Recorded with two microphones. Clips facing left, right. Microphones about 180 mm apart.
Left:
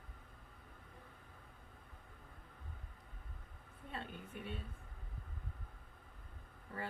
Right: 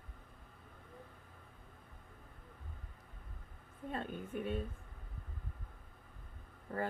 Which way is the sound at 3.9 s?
45° right (ahead or behind).